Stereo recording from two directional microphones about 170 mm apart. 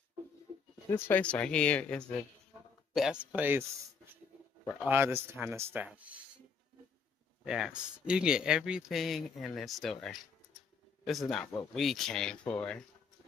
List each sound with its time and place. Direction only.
0.8 s a man's voice: 15° left (ahead or behind); by 5.9 s 10° right (ahead or behind)
7.4 s speech: 5° right (ahead or behind)